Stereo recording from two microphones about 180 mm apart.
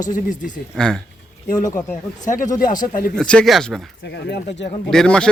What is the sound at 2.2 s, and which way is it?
Speech, 45° left (ahead or behind).